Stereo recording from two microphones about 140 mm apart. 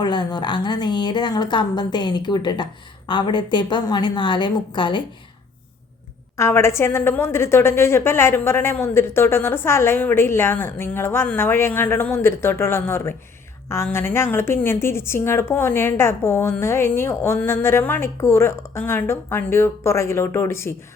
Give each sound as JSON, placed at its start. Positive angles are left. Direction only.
{"t": 0.0, "sound": "a woman's voice", "side_deg": 30}
{"t": 6.3, "sound": "a woman's voice", "side_deg": 20}